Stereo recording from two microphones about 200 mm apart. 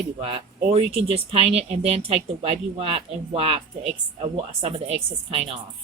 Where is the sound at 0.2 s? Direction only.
30° right (ahead or behind).